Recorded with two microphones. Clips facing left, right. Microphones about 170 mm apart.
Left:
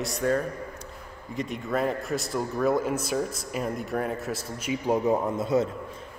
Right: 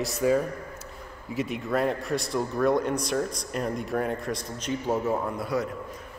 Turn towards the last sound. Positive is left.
turn(degrees=25)  # may be behind; listen again after turning